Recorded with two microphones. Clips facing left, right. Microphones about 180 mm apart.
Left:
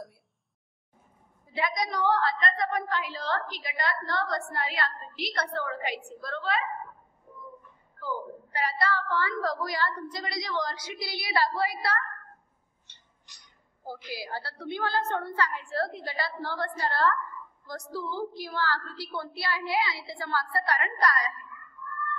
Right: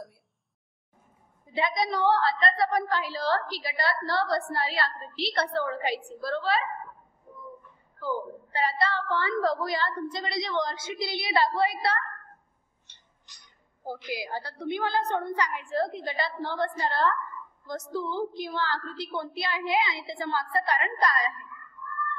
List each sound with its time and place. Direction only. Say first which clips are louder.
1.4 s a woman's voice: right 3 dB; 25° right (ahead or behind)
8.0 s a woman's voice: right 3 dB; 25° right (ahead or behind)
14.0 s a woman's voice: right 2 dB; 20° right (ahead or behind)